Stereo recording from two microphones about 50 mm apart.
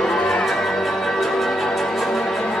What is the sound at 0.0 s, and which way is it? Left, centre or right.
Music, centre.